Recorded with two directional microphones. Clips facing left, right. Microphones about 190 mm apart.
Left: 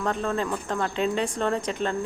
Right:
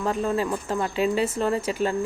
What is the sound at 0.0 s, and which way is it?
Speech, 5° right (ahead or behind).